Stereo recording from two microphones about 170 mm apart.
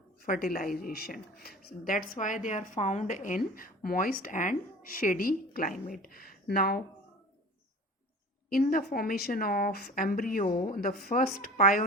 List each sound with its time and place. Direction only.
0.3 s a woman's voice: 55° left (ahead or behind)
8.4 s a woman's voice: 55° left (ahead or behind)